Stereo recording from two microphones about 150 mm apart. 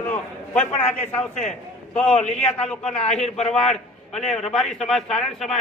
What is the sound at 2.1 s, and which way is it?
A man's voice, 50° left (ahead or behind).